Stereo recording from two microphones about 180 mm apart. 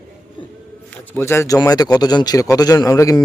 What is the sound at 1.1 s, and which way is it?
A man's voice, 15° left (ahead or behind).